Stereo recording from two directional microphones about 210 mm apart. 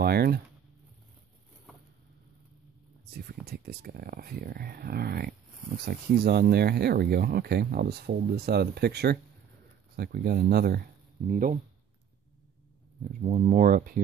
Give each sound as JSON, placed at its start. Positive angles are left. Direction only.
{"t": 0.0, "sound": "speech", "side_deg": -50}
{"t": 3.1, "sound": "speech", "side_deg": -50}
{"t": 13.2, "sound": "speech", "side_deg": -35}